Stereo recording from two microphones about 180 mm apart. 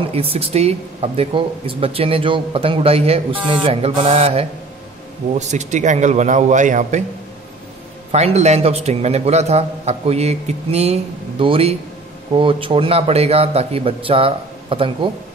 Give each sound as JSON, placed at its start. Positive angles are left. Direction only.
{"t": 0.0, "sound": "speech", "side_deg": -30}
{"t": 8.1, "sound": "speech", "side_deg": -35}